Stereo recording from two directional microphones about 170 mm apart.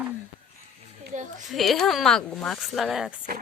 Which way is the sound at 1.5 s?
Centre (ahead or behind).